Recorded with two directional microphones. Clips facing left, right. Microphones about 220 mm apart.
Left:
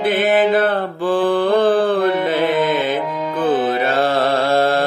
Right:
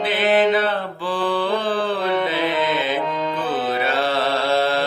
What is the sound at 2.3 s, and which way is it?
Music, 50° left (ahead or behind).